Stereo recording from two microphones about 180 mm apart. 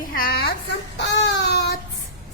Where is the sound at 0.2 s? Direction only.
55° left (ahead or behind).